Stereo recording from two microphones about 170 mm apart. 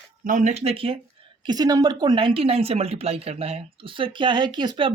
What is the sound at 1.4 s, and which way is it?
Speech, 25° right (ahead or behind).